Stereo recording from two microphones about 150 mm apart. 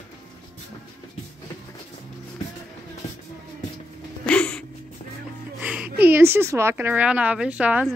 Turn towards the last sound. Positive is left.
turn(degrees=-10)  # may be behind; listen again after turning